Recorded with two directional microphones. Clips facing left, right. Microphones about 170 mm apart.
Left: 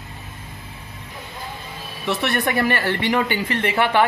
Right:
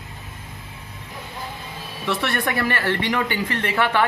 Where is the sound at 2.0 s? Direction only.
20° left (ahead or behind).